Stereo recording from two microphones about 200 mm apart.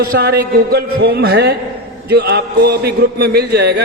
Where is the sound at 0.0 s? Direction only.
50° right (ahead or behind).